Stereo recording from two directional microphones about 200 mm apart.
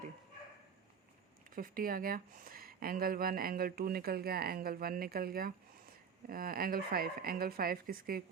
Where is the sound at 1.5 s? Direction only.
45° right (ahead or behind).